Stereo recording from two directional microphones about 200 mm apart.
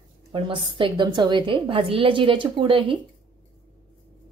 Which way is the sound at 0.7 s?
25° right (ahead or behind).